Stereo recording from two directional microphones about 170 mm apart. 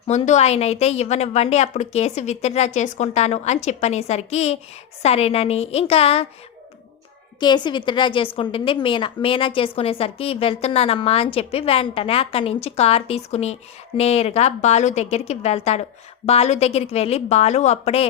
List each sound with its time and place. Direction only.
0.1 s a woman's voice: 40° left (ahead or behind)
7.3 s a woman's voice: 25° left (ahead or behind)